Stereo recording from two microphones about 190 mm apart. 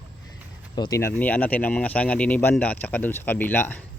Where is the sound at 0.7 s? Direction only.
20° left (ahead or behind).